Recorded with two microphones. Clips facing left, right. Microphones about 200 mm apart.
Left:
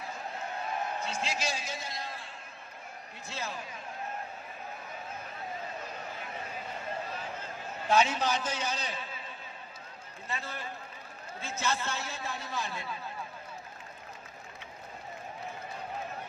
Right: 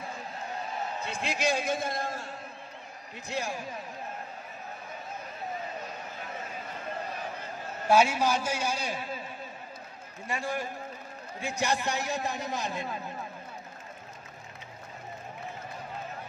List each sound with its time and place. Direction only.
1.0 s a man's voice: 55° right (ahead or behind)
3.3 s a man's voice: 15° right (ahead or behind)
7.9 s a man's voice: 10° right (ahead or behind)
10.2 s a man's voice: 15° right (ahead or behind)